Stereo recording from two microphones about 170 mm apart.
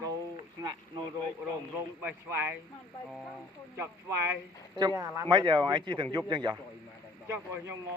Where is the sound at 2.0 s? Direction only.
15° right (ahead or behind).